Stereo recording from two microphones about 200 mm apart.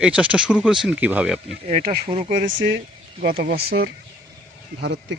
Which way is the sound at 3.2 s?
45° right (ahead or behind).